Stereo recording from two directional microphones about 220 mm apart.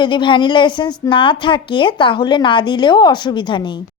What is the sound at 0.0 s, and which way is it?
A woman's voice, 20° left (ahead or behind).